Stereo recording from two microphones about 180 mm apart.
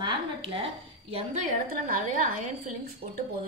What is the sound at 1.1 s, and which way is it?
A woman's voice, 45° right (ahead or behind).